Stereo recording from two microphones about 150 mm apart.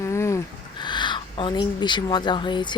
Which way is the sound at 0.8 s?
30° left (ahead or behind).